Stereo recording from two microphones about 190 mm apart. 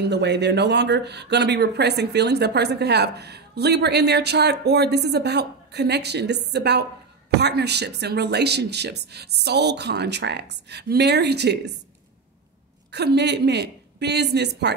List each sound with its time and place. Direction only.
0.0 s speech: 65° right (ahead or behind)
12.9 s speech: 60° right (ahead or behind)